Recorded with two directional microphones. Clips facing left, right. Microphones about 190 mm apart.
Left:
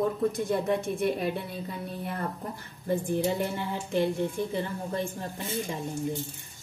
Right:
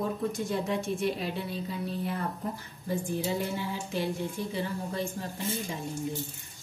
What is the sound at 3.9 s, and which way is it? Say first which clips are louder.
Speech: left 6 dB; 55° left (ahead or behind).